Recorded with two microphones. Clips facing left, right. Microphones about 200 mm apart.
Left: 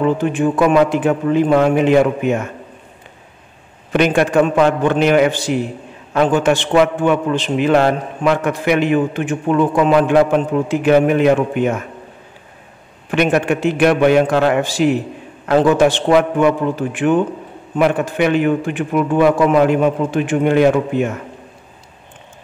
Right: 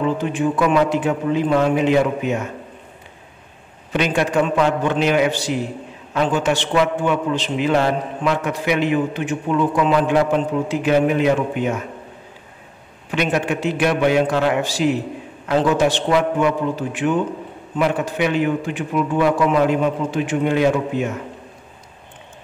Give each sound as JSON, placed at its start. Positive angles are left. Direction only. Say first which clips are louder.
{"t": 0.0, "sound": "a man's voice", "louder": "left 4 dB", "side_deg": 50}
{"t": 3.9, "sound": "a man's voice", "louder": "left 5 dB", "side_deg": 55}
{"t": 13.1, "sound": "a man's voice", "louder": "left 5 dB", "side_deg": 55}